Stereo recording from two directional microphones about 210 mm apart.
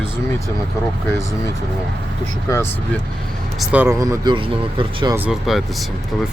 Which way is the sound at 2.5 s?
10° left (ahead or behind).